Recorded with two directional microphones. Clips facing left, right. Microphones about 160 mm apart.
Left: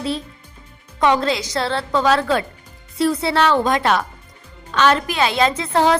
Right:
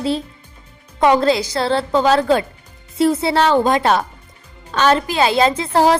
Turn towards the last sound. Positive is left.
turn(degrees=-30)  # may be behind; listen again after turning